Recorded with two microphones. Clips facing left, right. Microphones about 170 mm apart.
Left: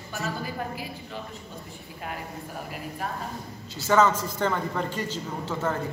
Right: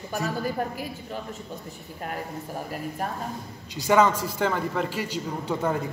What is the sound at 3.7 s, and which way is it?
A man's voice, 15° right (ahead or behind).